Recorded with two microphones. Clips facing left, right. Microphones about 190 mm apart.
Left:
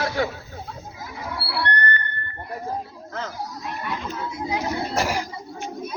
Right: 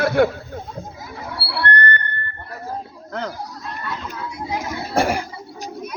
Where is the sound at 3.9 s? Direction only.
25° left (ahead or behind).